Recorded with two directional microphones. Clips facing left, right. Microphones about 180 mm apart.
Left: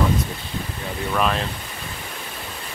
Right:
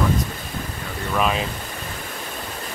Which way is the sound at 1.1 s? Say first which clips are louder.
Right 1 dB; 5° right (ahead or behind).